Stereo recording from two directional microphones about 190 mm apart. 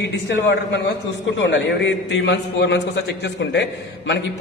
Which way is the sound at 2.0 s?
65° left (ahead or behind).